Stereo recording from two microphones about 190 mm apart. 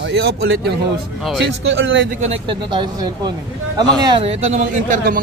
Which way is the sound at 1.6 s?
75° right (ahead or behind).